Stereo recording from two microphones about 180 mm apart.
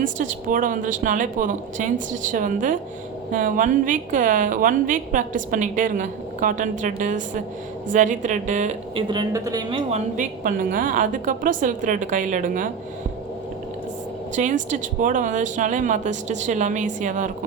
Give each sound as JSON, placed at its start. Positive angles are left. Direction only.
{"t": 0.0, "sound": "a woman's voice", "side_deg": -45}
{"t": 9.0, "sound": "speech", "side_deg": -20}
{"t": 10.2, "sound": "a woman's voice", "side_deg": -50}
{"t": 14.3, "sound": "a woman's voice", "side_deg": -45}